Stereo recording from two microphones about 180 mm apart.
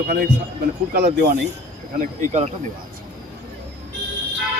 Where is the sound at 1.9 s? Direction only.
40° right (ahead or behind).